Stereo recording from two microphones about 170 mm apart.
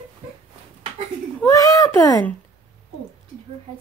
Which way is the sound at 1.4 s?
20° left (ahead or behind).